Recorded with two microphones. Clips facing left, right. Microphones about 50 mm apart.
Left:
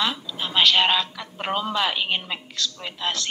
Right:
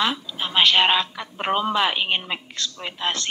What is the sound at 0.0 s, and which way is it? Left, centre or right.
A man's voice, right.